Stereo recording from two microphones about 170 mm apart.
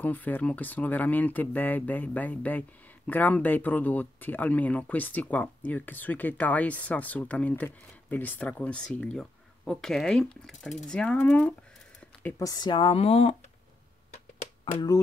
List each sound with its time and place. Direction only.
0.0 s speech: 10° left (ahead or behind); by 13.5 s 40° left (ahead or behind)
14.1 s typewriter: 40° left (ahead or behind)